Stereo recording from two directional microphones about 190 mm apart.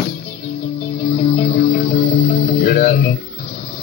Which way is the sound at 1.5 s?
50° left (ahead or behind).